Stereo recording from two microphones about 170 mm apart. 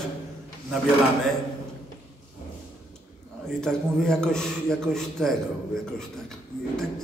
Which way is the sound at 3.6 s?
5° left (ahead or behind).